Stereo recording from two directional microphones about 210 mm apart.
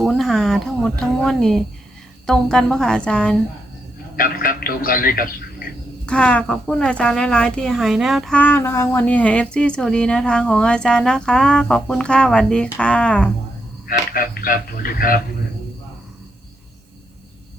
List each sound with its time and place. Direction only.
0.0 s speech: centre (ahead or behind)
4.2 s a man's voice: 45° left (ahead or behind)
6.1 s speech: 5° left (ahead or behind)
13.8 s speech: 45° left (ahead or behind)